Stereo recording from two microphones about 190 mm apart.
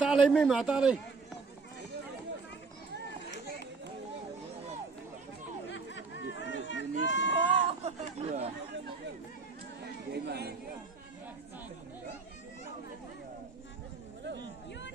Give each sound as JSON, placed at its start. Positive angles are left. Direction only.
{"t": 0.0, "sound": "a man's voice", "side_deg": 0}
{"t": 2.9, "sound": "children playing", "side_deg": -65}
{"t": 5.7, "sound": "chatter", "side_deg": 70}
{"t": 7.2, "sound": "a sound", "side_deg": 70}
{"t": 7.9, "sound": "speech", "side_deg": -35}
{"t": 10.1, "sound": "speech", "side_deg": -60}
{"t": 14.7, "sound": "a sound", "side_deg": 70}